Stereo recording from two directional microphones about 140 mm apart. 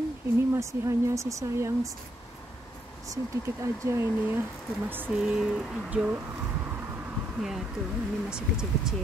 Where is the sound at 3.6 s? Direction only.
20° right (ahead or behind).